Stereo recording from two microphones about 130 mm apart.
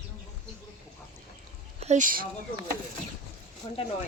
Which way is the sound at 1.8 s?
80° right.